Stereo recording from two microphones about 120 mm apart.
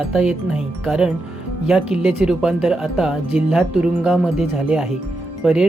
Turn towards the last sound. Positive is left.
turn(degrees=-5)  # may be behind; listen again after turning